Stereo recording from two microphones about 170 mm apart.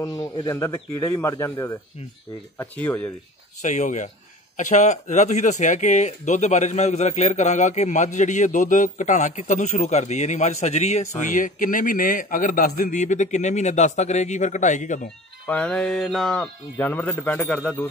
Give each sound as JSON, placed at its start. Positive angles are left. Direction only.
{"t": 0.0, "sound": "speech", "side_deg": 20}
{"t": 3.6, "sound": "speech", "side_deg": 45}
{"t": 15.4, "sound": "speech", "side_deg": 5}